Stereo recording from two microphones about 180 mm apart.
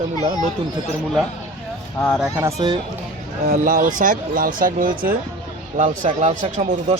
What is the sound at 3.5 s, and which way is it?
Speech, 50° right (ahead or behind).